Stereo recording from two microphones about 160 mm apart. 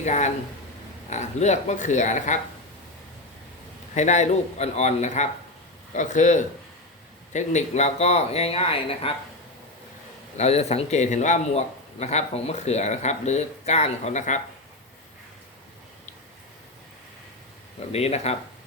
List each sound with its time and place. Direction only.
0.0 s a man's voice: 45° left (ahead or behind)
3.9 s a man's voice: 45° left (ahead or behind)
10.3 s a man's voice: 40° left (ahead or behind)
17.9 s speech: 40° left (ahead or behind)